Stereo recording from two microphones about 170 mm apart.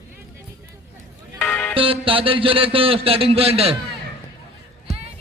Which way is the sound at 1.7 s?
30° right (ahead or behind).